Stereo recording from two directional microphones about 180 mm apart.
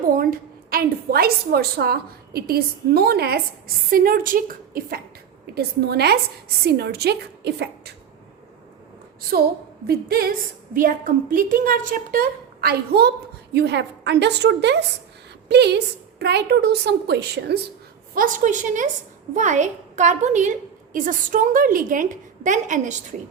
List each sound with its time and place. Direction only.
0.2 s a woman's voice: 55° right (ahead or behind)
5.5 s a woman's voice: 65° right (ahead or behind)
9.8 s a woman's voice: 60° right (ahead or behind)
13.5 s a woman's voice: 70° right (ahead or behind)
18.1 s a woman's voice: 50° right (ahead or behind)